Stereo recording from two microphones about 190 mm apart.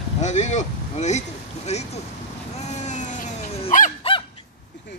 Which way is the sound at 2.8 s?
40° left (ahead or behind).